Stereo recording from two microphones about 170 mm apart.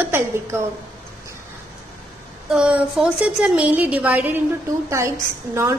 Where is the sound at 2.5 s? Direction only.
5° right (ahead or behind).